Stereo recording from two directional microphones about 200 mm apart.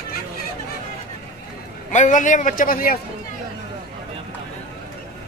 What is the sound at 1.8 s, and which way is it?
A man's voice, 40° left (ahead or behind).